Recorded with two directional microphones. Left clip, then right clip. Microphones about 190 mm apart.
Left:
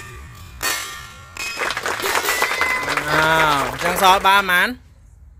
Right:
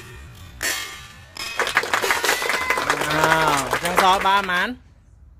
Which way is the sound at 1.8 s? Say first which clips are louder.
Right 3 dB; centre (ahead or behind).